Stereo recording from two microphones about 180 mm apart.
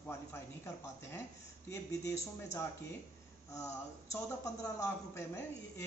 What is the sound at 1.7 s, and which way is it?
Speech, 15° left (ahead or behind).